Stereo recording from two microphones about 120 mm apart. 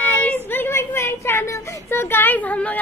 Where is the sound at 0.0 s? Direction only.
15° left (ahead or behind).